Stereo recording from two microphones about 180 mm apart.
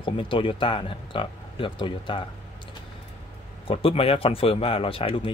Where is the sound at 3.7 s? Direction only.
30° left (ahead or behind).